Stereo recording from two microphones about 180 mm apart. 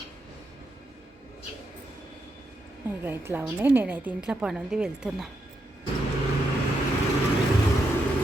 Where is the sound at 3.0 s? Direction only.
10° right (ahead or behind).